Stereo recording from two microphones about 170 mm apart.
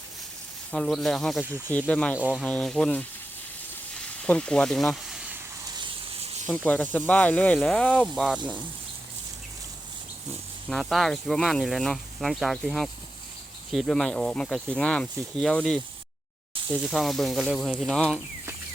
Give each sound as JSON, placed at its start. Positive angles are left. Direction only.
{"t": 0.7, "sound": "speech", "side_deg": 0}
{"t": 2.1, "sound": "speech", "side_deg": -10}
{"t": 2.4, "sound": "speech", "side_deg": 5}
{"t": 4.2, "sound": "speech", "side_deg": 5}
{"t": 6.7, "sound": "speech", "side_deg": 10}
{"t": 10.7, "sound": "speech", "side_deg": 0}
{"t": 16.8, "sound": "speech", "side_deg": 0}